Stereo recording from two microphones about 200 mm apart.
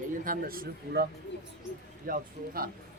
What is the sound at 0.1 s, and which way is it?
Speech, 45° right (ahead or behind).